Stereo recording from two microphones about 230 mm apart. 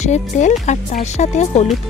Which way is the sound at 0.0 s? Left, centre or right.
Left.